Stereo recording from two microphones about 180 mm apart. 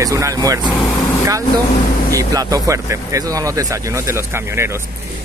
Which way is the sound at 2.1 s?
20° right (ahead or behind).